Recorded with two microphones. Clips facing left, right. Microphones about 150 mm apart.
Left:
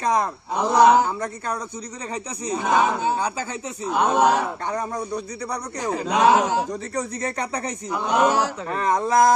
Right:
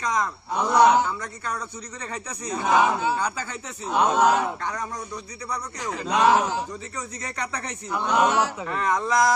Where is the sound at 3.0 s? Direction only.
20° left (ahead or behind).